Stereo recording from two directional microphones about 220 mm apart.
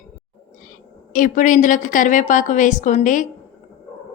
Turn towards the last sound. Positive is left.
turn(degrees=35)  # may be behind; listen again after turning